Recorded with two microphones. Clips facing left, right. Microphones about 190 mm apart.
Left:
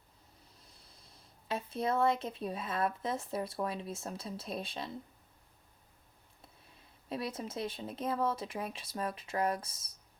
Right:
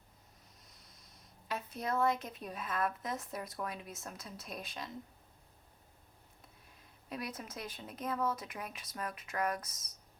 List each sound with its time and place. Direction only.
0.6 s speech: 30° left (ahead or behind)
7.1 s speech: 25° left (ahead or behind)